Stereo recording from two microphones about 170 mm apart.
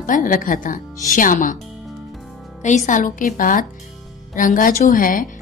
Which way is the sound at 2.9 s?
50° left (ahead or behind).